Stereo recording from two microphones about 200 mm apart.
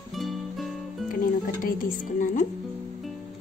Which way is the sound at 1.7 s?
40° left (ahead or behind).